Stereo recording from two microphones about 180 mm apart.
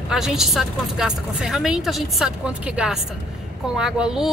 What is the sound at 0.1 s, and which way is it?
A woman's voice, centre (ahead or behind).